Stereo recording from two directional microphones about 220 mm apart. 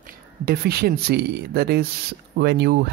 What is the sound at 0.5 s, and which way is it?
Speech, 45° right (ahead or behind).